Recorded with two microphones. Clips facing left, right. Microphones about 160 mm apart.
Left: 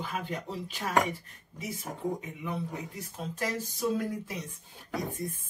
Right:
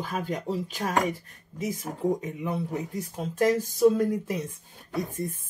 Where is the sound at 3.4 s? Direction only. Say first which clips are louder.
Right 12 dB; 45° right (ahead or behind).